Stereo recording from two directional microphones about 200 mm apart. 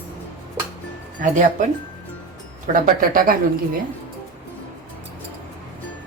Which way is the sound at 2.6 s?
45° right (ahead or behind).